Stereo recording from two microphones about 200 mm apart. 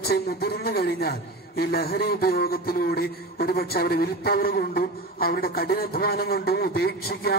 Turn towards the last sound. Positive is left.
turn(degrees=50)  # may be behind; listen again after turning